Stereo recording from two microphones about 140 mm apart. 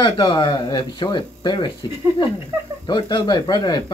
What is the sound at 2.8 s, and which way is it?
Speech, 30° left (ahead or behind).